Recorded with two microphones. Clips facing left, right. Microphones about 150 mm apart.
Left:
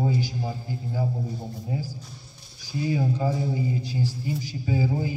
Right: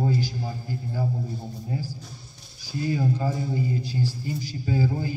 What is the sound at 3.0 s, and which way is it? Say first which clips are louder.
A man's voice: left 1 dB; 15° left (ahead or behind).